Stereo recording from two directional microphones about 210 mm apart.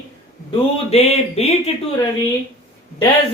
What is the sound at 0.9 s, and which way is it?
Speech, 30° left (ahead or behind).